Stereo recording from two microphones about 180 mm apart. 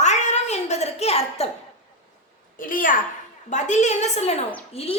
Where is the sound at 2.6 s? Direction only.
50° left (ahead or behind).